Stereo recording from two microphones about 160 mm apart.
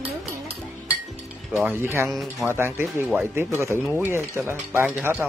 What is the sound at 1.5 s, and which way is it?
Speech, 5° right (ahead or behind).